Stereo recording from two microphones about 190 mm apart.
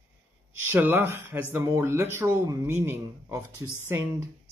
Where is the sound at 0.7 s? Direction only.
10° right (ahead or behind).